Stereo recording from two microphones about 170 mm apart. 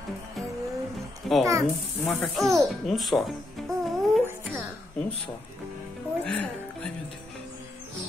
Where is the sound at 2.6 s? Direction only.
Centre (ahead or behind).